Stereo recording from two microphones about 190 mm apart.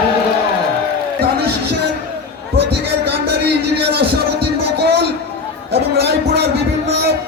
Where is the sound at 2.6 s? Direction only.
60° right (ahead or behind).